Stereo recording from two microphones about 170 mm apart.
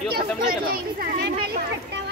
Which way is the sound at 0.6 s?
65° right (ahead or behind).